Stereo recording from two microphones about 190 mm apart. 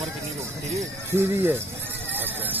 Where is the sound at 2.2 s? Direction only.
10° right (ahead or behind).